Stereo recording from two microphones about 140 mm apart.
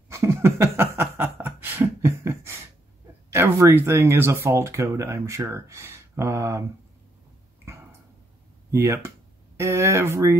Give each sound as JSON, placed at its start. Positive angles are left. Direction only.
{"t": 0.1, "sound": "chuckle", "side_deg": -20}
{"t": 3.3, "sound": "speech", "side_deg": -15}
{"t": 8.7, "sound": "speech", "side_deg": -20}